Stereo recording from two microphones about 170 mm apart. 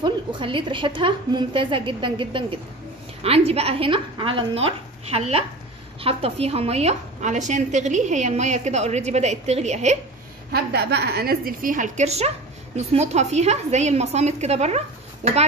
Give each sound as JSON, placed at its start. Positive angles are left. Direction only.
{"t": 0.0, "sound": "a woman's voice", "side_deg": -30}
{"t": 10.5, "sound": "a woman's voice", "side_deg": -75}